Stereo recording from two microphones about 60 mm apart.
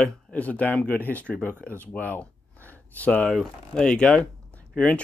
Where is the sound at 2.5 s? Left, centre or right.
Right.